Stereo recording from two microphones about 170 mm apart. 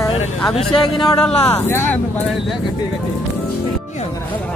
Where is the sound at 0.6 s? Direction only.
30° left (ahead or behind).